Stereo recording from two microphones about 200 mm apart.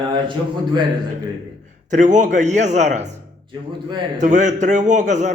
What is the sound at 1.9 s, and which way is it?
A man's voice, 40° right (ahead or behind).